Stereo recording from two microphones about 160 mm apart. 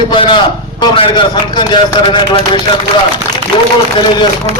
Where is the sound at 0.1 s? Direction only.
30° left (ahead or behind).